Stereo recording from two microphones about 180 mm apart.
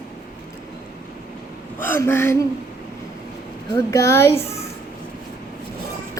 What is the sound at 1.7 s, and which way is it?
Speech, 10° left (ahead or behind).